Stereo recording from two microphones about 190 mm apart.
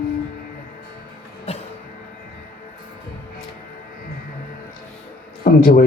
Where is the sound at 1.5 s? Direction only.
30° left (ahead or behind).